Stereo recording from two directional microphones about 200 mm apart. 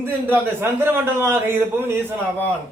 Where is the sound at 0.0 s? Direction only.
10° right (ahead or behind).